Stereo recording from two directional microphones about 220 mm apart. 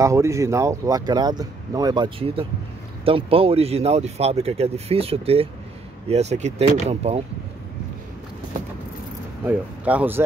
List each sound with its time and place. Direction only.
0.0 s speech: 15° right (ahead or behind)
9.5 s speech: 5° right (ahead or behind)